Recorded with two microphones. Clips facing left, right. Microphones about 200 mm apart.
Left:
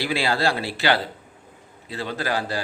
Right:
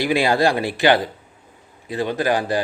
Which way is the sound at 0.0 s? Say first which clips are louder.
Right 5 dB; 15° right (ahead or behind).